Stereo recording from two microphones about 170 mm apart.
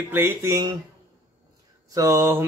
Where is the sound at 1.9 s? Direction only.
20° right (ahead or behind).